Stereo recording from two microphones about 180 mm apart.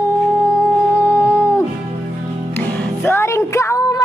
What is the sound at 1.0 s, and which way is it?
Music, 15° left (ahead or behind).